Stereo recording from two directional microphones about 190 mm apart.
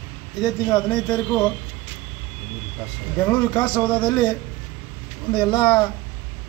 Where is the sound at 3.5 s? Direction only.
20° left (ahead or behind).